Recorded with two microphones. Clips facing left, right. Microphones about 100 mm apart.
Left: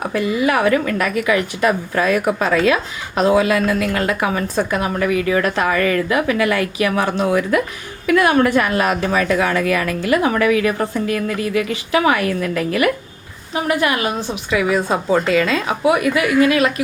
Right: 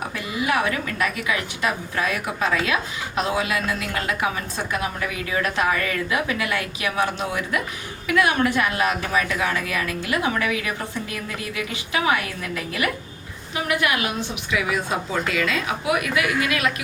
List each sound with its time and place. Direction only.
0.1 s a woman's voice: 45° left (ahead or behind)
7.0 s a woman's voice: 40° left (ahead or behind)
13.7 s a woman's voice: 35° left (ahead or behind)